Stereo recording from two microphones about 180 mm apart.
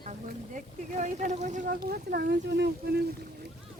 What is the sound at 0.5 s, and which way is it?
Speech, 45° right (ahead or behind).